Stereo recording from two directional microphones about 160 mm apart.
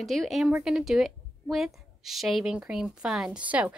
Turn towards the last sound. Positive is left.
turn(degrees=-10)  # may be behind; listen again after turning